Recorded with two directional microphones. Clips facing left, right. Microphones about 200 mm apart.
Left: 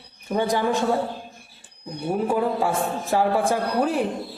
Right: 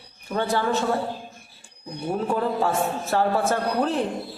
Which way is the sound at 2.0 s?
10° left (ahead or behind).